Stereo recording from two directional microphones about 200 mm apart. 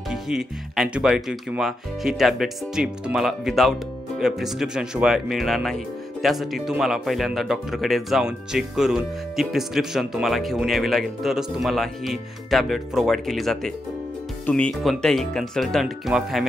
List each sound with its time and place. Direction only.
0.1 s speech: centre (ahead or behind)